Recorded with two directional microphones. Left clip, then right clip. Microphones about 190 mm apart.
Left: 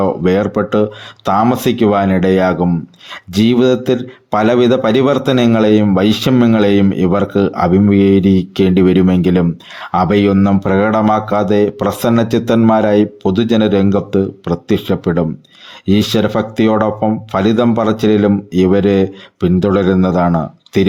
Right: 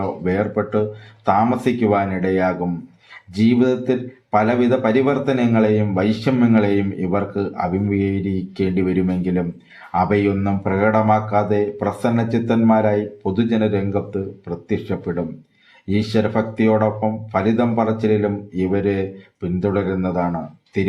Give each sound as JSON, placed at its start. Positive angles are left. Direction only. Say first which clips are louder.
{"t": 0.2, "sound": "a man's voice", "louder": "left 7 dB", "side_deg": 60}